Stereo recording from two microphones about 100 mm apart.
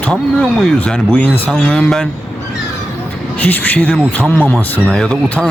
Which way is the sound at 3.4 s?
15° left (ahead or behind).